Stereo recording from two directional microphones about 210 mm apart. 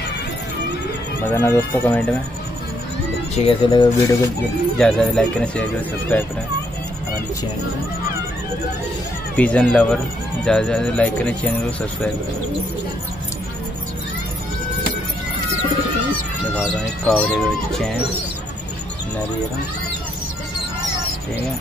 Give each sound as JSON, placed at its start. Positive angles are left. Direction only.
{"t": 1.2, "sound": "speech", "side_deg": 10}
{"t": 3.4, "sound": "speech", "side_deg": 20}
{"t": 4.7, "sound": "speech", "side_deg": 0}
{"t": 9.4, "sound": "speech", "side_deg": 5}
{"t": 16.5, "sound": "speech", "side_deg": 5}